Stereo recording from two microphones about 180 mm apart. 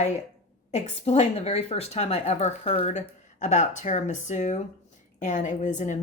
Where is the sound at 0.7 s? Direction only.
40° left (ahead or behind).